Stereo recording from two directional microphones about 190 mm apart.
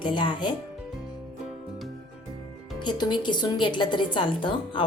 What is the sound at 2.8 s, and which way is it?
Speech, 25° left (ahead or behind).